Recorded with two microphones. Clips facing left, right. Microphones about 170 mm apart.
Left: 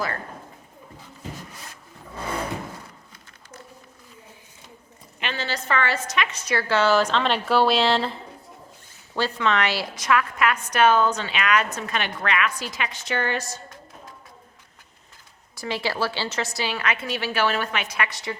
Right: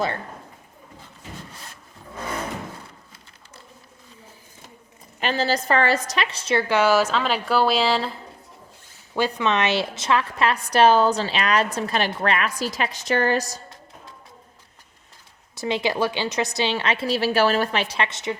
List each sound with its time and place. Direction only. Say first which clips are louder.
5.2 s a woman's voice: right 7 dB; 40° right (ahead or behind); by 8.2 s centre (ahead or behind)
9.1 s a woman's voice: right 1 dB; 15° right (ahead or behind); by 13.6 s 40° right (ahead or behind)
15.5 s a woman's voice: right 4 dB; 20° right (ahead or behind)